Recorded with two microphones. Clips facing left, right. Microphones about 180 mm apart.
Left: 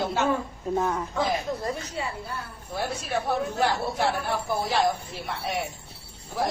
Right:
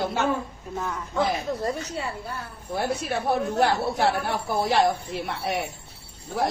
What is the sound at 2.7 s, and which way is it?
Speech, 60° right (ahead or behind).